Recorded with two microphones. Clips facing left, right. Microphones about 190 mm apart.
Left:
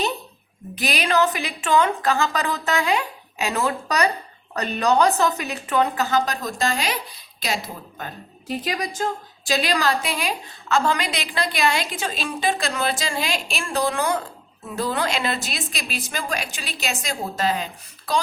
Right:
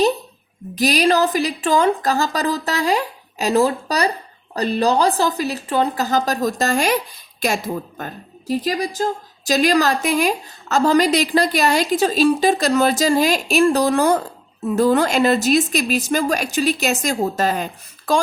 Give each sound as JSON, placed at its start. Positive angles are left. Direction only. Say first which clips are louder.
{"t": 0.8, "sound": "a woman's voice", "louder": "right 5 dB", "side_deg": -40}